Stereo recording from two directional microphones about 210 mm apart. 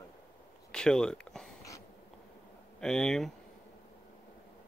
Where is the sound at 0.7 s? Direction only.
5° left (ahead or behind).